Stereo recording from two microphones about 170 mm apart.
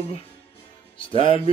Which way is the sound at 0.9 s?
30° left (ahead or behind).